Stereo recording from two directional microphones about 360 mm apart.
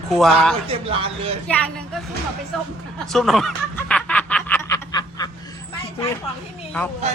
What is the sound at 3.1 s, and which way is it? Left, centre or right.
Snicker, centre.